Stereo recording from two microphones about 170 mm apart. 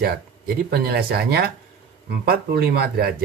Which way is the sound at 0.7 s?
65° right (ahead or behind).